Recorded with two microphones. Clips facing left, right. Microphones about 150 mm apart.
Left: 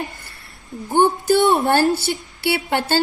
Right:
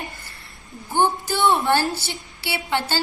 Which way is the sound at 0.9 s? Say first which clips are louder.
Left 6 dB; 50° left (ahead or behind).